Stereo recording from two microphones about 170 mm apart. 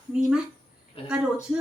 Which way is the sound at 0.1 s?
5° right (ahead or behind).